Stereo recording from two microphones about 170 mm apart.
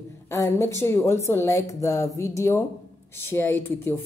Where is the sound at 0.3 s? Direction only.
15° left (ahead or behind).